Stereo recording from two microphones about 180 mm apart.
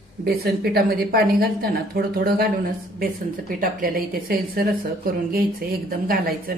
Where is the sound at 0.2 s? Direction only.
60° right (ahead or behind).